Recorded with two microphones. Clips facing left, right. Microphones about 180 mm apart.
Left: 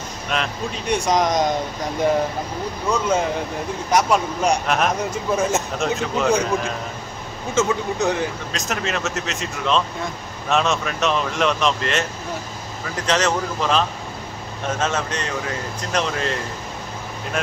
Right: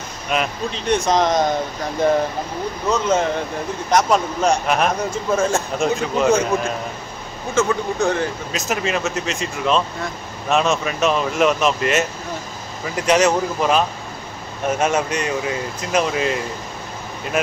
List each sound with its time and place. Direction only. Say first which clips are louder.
0.3 s speech: right 3 dB; 5° right (ahead or behind)
0.8 s speech: right 2 dB; 10° left (ahead or behind)
2.9 s speech: right 2 dB; 10° left (ahead or behind)
4.6 s speech: right 2 dB; centre (ahead or behind)
5.3 s speech: right 2 dB; 15° left (ahead or behind)
5.8 s speech: right 3 dB; centre (ahead or behind)
7.5 s speech: right 1 dB; 20° left (ahead or behind)
8.5 s speech: right 4 dB; 5° right (ahead or behind)